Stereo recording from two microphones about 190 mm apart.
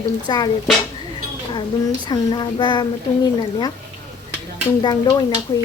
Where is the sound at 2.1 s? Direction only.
25° left (ahead or behind).